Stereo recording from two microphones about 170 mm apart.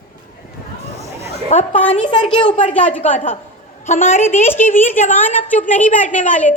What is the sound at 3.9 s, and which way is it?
Speech, 40° left (ahead or behind).